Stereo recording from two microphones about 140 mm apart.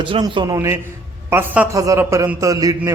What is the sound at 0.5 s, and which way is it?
A man's voice, 20° right (ahead or behind).